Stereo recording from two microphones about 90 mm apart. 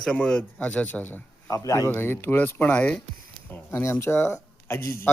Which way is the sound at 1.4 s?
35° left (ahead or behind).